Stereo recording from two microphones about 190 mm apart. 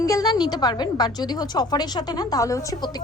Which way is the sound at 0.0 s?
20° left (ahead or behind).